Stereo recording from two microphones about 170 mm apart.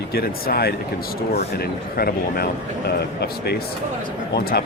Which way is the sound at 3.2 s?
75° left (ahead or behind).